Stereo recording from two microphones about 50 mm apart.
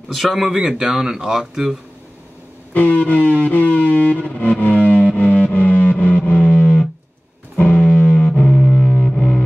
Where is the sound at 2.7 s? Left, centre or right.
Left.